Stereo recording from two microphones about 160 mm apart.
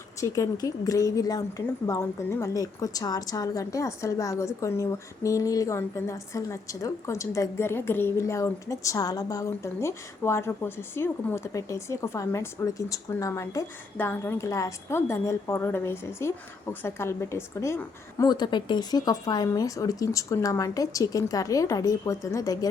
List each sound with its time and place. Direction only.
0.2 s a woman's voice: 20° left (ahead or behind)